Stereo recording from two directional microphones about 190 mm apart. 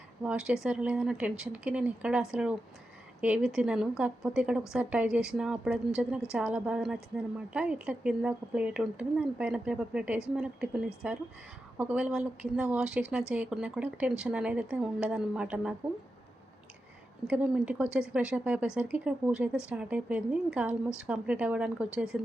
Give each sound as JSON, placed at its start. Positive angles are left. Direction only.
{"t": 0.2, "sound": "speech", "side_deg": -5}
{"t": 17.2, "sound": "a woman's voice", "side_deg": -5}